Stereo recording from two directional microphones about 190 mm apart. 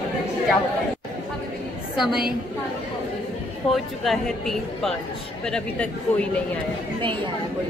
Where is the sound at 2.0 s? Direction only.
Centre (ahead or behind).